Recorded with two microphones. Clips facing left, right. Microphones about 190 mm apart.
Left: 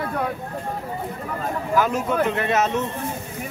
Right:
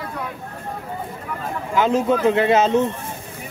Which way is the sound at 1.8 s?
30° right (ahead or behind).